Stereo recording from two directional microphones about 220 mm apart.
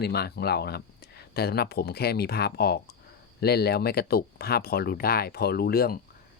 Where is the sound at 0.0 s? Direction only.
45° left (ahead or behind).